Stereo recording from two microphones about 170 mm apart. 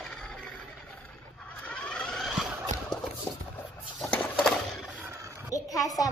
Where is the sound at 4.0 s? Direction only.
5° left (ahead or behind).